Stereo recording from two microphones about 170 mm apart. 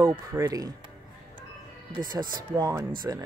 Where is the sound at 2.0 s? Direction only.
25° right (ahead or behind).